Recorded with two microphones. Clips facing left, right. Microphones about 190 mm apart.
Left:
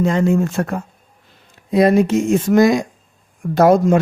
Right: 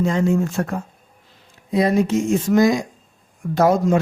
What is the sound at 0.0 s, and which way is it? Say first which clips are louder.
Speech: left 3 dB; 65° left (ahead or behind).